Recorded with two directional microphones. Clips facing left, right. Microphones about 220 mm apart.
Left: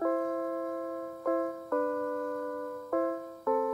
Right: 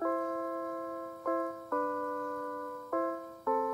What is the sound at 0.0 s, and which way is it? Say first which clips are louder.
Music: left 4 dB; 35° left (ahead or behind).